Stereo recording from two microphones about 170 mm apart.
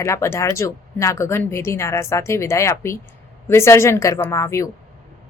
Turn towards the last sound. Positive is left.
turn(degrees=15)  # may be behind; listen again after turning